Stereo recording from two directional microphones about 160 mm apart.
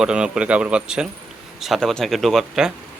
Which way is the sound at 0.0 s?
5° right (ahead or behind).